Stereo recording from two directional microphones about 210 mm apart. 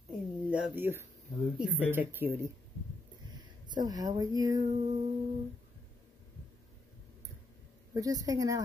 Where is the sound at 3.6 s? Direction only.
20° right (ahead or behind).